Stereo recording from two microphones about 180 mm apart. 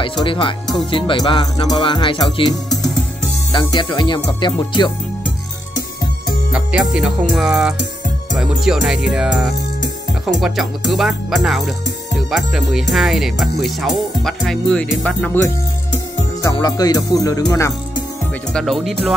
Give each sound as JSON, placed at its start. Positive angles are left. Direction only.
{"t": 0.2, "sound": "music", "side_deg": 30}
{"t": 2.5, "sound": "speech", "side_deg": 0}
{"t": 3.5, "sound": "music", "side_deg": 25}
{"t": 6.5, "sound": "speech", "side_deg": -5}
{"t": 16.4, "sound": "music", "side_deg": 20}
{"t": 18.5, "sound": "speech", "side_deg": 0}